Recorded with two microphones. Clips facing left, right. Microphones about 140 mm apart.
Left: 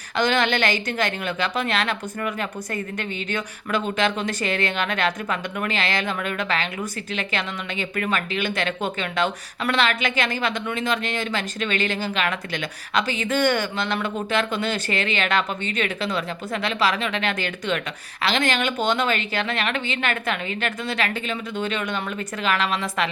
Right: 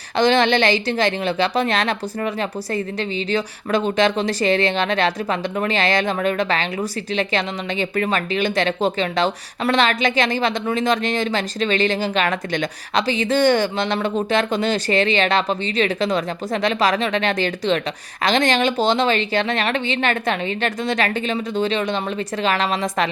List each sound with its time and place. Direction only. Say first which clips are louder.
0.2 s speech: right 5 dB; 35° right (ahead or behind)